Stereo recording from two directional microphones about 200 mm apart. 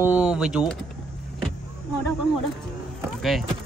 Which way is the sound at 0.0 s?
5° right (ahead or behind).